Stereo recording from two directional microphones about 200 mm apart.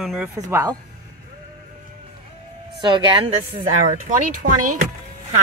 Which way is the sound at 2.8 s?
25° right (ahead or behind).